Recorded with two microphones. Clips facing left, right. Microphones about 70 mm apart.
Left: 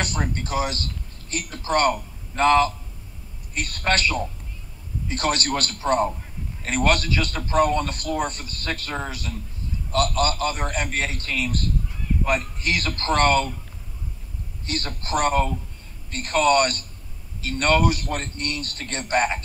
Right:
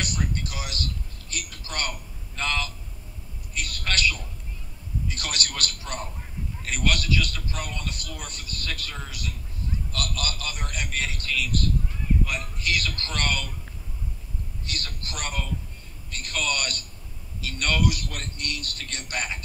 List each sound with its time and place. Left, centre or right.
0.0 s a man's voice: left
14.7 s a man's voice: left